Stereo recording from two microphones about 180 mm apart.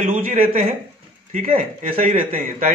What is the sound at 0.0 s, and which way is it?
A man's voice, 45° right (ahead or behind).